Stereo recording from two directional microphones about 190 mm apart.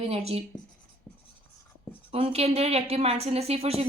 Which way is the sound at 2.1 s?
30° right (ahead or behind).